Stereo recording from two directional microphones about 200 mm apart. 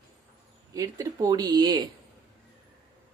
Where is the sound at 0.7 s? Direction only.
15° right (ahead or behind).